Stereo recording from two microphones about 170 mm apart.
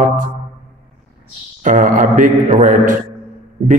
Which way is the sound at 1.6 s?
50° right (ahead or behind).